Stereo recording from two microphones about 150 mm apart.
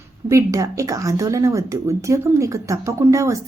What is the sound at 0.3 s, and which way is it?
Speech, 20° right (ahead or behind).